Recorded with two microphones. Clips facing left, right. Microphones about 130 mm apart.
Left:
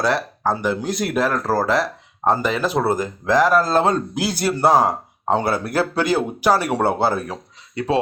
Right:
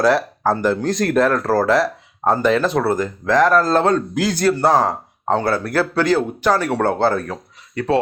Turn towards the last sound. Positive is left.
turn(degrees=15)  # may be behind; listen again after turning